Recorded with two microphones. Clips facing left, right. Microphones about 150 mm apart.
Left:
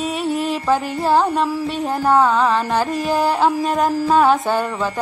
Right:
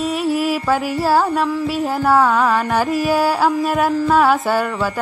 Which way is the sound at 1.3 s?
Centre (ahead or behind).